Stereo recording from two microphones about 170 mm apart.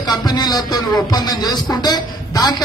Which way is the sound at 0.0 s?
25° left (ahead or behind).